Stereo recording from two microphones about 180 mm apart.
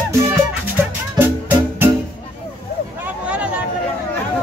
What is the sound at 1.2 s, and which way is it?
Music, 10° right (ahead or behind).